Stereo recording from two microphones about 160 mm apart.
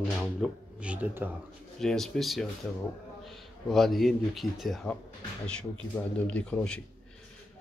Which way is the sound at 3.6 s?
Centre (ahead or behind).